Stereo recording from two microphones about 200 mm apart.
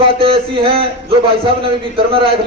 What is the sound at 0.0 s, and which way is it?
A man's voice, 25° right (ahead or behind).